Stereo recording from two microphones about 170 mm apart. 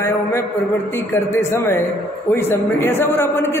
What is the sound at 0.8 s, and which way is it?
A man's voice, 15° left (ahead or behind).